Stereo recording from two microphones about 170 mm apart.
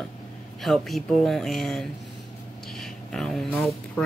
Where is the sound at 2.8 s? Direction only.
Centre (ahead or behind).